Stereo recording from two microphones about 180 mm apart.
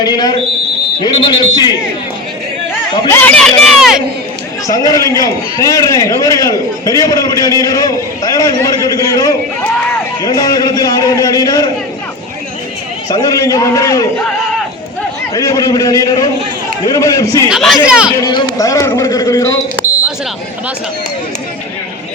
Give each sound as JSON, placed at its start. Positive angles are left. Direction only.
{"t": 0.0, "sound": "a man's voice", "side_deg": 20}
{"t": 2.9, "sound": "speech", "side_deg": 15}
{"t": 4.7, "sound": "a man's voice", "side_deg": 20}
{"t": 13.1, "sound": "a man's voice", "side_deg": 20}
{"t": 15.3, "sound": "a man's voice", "side_deg": 20}
{"t": 17.5, "sound": "speech", "side_deg": 0}
{"t": 18.2, "sound": "a man's voice", "side_deg": 25}